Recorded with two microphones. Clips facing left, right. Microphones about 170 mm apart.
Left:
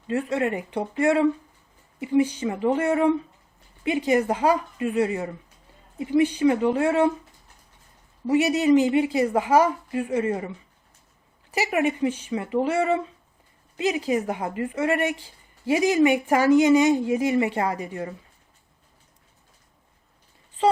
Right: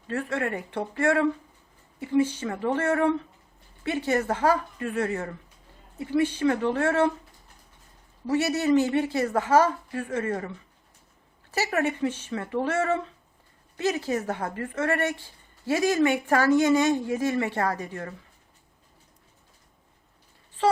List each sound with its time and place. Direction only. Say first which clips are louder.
0.1 s speech: left 4 dB; 15° left (ahead or behind)
8.3 s speech: left 4 dB; 15° left (ahead or behind)
11.5 s speech: left 3 dB; 15° left (ahead or behind)